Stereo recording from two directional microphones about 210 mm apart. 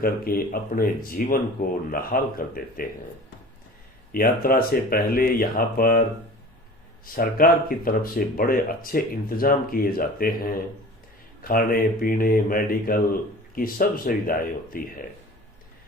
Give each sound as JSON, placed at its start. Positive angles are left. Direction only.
{"t": 0.0, "sound": "speech", "side_deg": 45}
{"t": 4.1, "sound": "speech", "side_deg": 45}
{"t": 7.0, "sound": "speech", "side_deg": 45}